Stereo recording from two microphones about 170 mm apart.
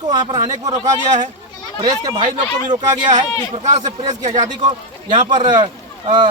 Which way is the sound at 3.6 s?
45° right (ahead or behind).